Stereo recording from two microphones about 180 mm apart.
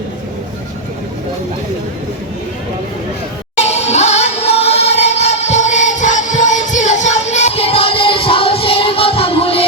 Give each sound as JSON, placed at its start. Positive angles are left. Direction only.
{"t": 3.6, "sound": "music", "side_deg": 35}